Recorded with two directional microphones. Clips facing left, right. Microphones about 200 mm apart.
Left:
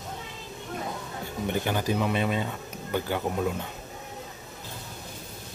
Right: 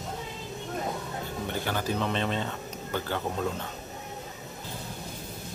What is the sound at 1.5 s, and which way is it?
Speech, 15° left (ahead or behind).